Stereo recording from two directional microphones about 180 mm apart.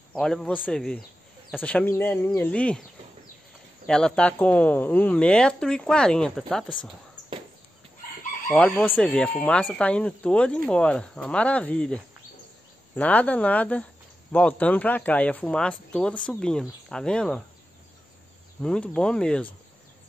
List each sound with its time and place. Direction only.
0.1 s speech: 5° left (ahead or behind)
3.8 s speech: 5° left (ahead or behind)
8.5 s speech: 5° left (ahead or behind)
18.6 s speech: 5° left (ahead or behind)